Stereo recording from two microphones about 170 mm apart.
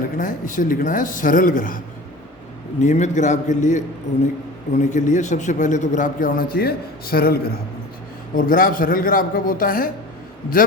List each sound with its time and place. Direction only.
0.2 s a man's voice: 50° left (ahead or behind)